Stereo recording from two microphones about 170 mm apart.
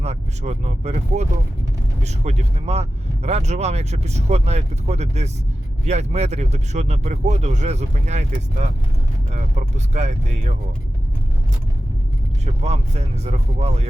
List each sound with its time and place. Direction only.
0.0 s speech: 40° right (ahead or behind)
12.6 s speech: 40° right (ahead or behind)